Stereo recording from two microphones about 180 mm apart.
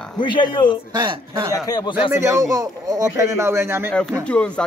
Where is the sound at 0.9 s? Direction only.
25° right (ahead or behind).